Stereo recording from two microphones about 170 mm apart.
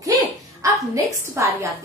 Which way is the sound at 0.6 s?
20° right (ahead or behind).